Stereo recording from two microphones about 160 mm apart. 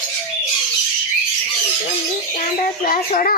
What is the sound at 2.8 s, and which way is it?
Speech, 60° left (ahead or behind).